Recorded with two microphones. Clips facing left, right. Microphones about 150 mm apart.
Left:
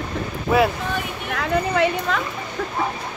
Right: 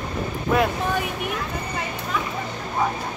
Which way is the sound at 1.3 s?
85° left.